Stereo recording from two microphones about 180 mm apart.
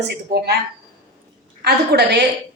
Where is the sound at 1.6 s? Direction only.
65° right (ahead or behind).